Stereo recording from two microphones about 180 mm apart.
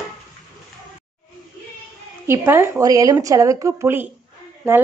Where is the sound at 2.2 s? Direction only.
15° right (ahead or behind).